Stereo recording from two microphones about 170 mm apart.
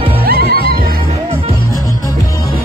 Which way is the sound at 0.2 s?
65° right (ahead or behind).